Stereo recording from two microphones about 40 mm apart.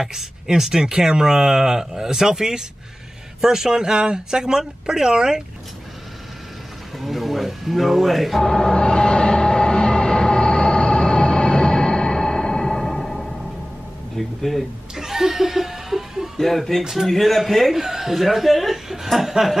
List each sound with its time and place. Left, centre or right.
0.0 s speech: centre
7.0 s speech: centre
8.4 s train: centre
12.8 s music: centre
14.1 s speech: centre
15.0 s chuckle: centre
16.3 s speech: centre
17.7 s speech: centre